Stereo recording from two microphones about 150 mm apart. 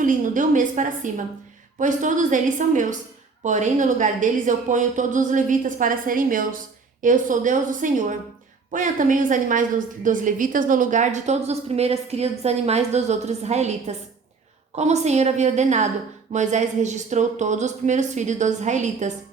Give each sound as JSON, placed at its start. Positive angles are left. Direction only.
{"t": 0.0, "sound": "a woman's voice", "side_deg": -60}